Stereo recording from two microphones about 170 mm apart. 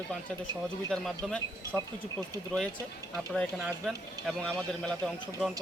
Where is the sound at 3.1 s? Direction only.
Centre (ahead or behind).